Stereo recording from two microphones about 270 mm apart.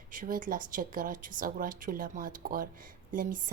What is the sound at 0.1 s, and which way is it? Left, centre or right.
Speech, right.